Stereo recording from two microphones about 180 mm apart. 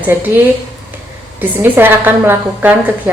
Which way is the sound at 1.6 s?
10° right (ahead or behind).